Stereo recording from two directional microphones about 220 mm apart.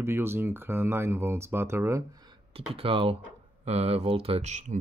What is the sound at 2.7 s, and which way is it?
Speech, 25° right (ahead or behind).